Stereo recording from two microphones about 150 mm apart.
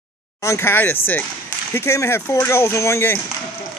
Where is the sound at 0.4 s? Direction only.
20° left (ahead or behind).